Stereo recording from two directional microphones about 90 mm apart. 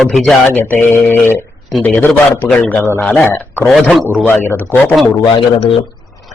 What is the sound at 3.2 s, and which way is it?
Speech, 25° left (ahead or behind).